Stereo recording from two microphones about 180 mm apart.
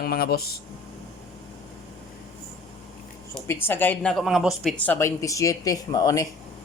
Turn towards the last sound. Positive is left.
turn(degrees=20)  # may be behind; listen again after turning